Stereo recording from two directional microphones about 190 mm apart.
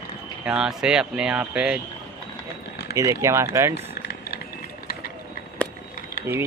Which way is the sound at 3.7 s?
55° left (ahead or behind).